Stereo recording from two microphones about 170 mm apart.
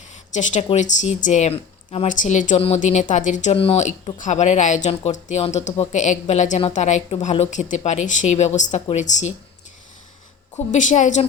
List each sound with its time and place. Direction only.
0.1 s speech: 45° left (ahead or behind)
2.0 s speech: 45° left (ahead or behind)
10.7 s speech: 45° left (ahead or behind)